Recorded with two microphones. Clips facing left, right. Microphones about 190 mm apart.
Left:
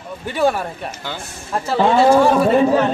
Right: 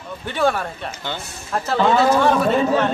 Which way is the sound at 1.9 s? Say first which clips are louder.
Left 5 dB; 30° left (ahead or behind).